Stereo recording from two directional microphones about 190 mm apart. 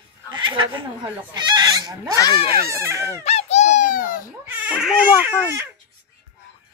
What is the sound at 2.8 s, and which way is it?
Speech, 15° right (ahead or behind).